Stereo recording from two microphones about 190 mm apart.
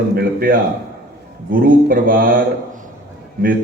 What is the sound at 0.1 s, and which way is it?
A man's voice, 50° right (ahead or behind).